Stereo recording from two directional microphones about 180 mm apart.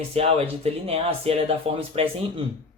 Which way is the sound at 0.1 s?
35° right (ahead or behind).